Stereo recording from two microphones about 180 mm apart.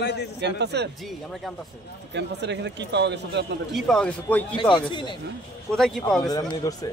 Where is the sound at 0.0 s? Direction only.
70° left (ahead or behind).